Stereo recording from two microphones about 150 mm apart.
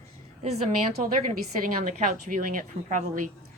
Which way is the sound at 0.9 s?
70° right (ahead or behind).